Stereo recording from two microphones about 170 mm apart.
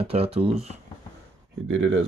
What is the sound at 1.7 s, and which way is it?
Speech, 90° right.